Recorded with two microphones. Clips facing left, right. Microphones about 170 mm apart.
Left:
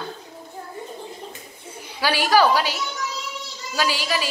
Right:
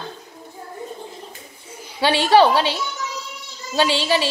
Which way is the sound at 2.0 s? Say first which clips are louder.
Right 4 dB; 25° right (ahead or behind).